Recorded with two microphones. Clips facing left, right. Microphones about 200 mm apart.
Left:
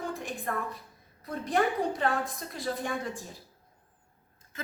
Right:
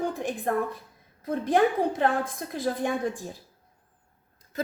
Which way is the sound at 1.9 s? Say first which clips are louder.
Right 4 dB; 50° right (ahead or behind).